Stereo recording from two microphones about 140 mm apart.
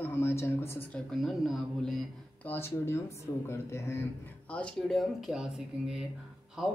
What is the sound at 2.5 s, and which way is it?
Speech, 20° left (ahead or behind).